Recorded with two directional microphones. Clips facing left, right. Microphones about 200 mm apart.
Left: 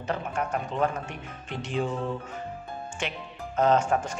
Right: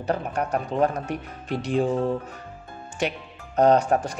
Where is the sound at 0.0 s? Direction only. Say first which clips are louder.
Right 4 dB; 35° right (ahead or behind).